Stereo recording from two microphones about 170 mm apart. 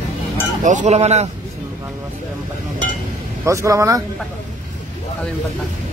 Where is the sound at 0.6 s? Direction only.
45° right (ahead or behind).